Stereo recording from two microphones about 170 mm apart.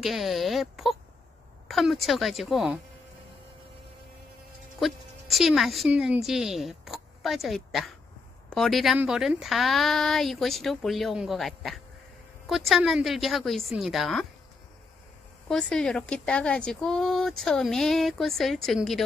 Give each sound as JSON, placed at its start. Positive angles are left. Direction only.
{"t": 0.0, "sound": "speech", "side_deg": 0}
{"t": 4.7, "sound": "a woman's voice", "side_deg": 0}
{"t": 15.4, "sound": "speech", "side_deg": 5}